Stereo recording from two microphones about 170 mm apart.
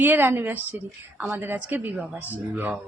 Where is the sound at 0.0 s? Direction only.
10° right (ahead or behind).